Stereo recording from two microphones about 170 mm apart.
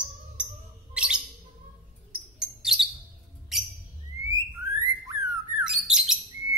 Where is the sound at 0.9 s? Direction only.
5° right (ahead or behind).